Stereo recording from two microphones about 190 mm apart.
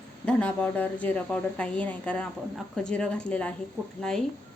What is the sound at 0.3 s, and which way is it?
A woman's voice, 5° left (ahead or behind).